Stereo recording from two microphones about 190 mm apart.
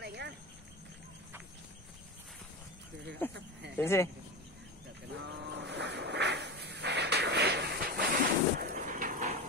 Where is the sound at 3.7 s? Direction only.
15° left (ahead or behind).